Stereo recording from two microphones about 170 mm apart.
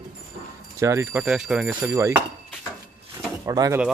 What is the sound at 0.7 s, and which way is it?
Speech, 15° right (ahead or behind).